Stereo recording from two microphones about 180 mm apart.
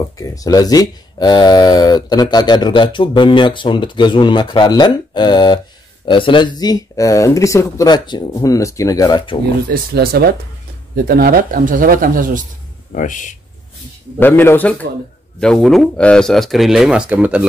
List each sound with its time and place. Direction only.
0.2 s speech: 20° left (ahead or behind)
9.7 s speech: 60° right (ahead or behind)
12.9 s speech: 45° left (ahead or behind)
14.2 s speech: 10° left (ahead or behind); by 17.5 s 10° right (ahead or behind)